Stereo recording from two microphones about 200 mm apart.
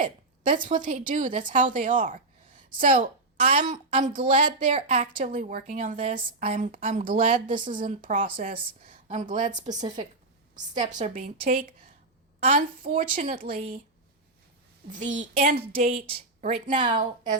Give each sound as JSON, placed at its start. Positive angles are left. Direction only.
{"t": 0.0, "sound": "a sound", "side_deg": -45}
{"t": 0.7, "sound": "a woman's voice", "side_deg": -40}
{"t": 12.8, "sound": "a woman's voice", "side_deg": -40}
{"t": 13.3, "sound": "a woman's voice", "side_deg": -30}
{"t": 15.1, "sound": "a woman's voice", "side_deg": -40}
{"t": 16.7, "sound": "a woman's voice", "side_deg": -25}